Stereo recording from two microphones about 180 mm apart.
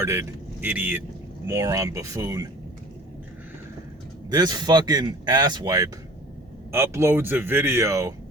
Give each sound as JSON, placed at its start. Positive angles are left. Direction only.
{"t": 0.0, "sound": "speech", "side_deg": -15}
{"t": 4.3, "sound": "speech", "side_deg": -20}